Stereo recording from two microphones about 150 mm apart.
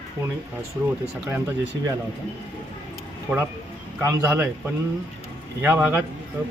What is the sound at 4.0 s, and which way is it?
Speech, 20° right (ahead or behind).